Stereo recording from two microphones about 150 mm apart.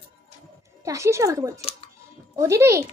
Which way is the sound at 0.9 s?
20° right (ahead or behind).